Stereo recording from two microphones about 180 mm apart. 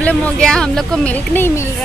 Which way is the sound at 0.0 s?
5° left (ahead or behind).